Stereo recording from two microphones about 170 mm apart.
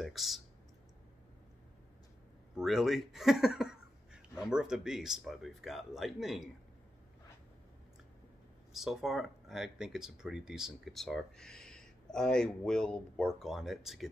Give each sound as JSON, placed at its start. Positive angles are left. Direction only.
{"t": 0.0, "sound": "speech", "side_deg": 0}
{"t": 2.5, "sound": "speech", "side_deg": 0}
{"t": 8.7, "sound": "speech", "side_deg": 0}